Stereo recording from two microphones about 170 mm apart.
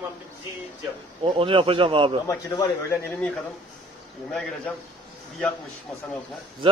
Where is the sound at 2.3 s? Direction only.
15° left (ahead or behind).